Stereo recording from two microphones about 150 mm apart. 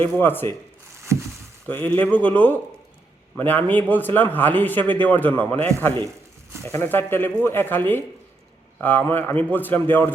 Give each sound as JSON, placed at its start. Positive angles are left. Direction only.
{"t": 0.0, "sound": "a man's voice", "side_deg": 15}
{"t": 1.1, "sound": "a sound", "side_deg": -20}
{"t": 1.6, "sound": "a man's voice", "side_deg": 10}